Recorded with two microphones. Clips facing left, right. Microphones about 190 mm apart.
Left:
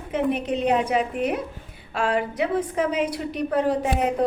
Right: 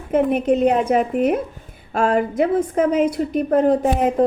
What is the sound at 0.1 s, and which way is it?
A woman's voice, 50° right (ahead or behind).